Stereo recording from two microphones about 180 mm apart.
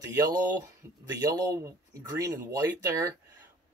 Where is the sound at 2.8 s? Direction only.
20° right (ahead or behind).